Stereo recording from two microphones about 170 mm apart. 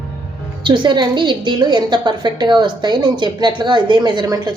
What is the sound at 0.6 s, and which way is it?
A woman's voice, 30° right (ahead or behind).